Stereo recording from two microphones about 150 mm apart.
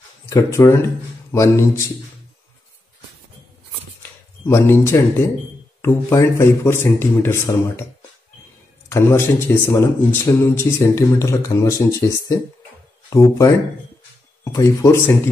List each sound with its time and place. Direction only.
0.3 s speech: 20° left (ahead or behind)
4.0 s speech: 15° left (ahead or behind)
8.8 s speech: 15° left (ahead or behind)
14.4 s speech: 20° left (ahead or behind)